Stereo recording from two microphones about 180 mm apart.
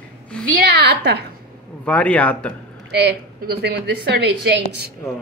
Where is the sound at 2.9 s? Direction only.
65° right (ahead or behind).